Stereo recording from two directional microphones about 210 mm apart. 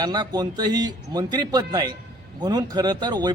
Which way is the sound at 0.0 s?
20° right (ahead or behind).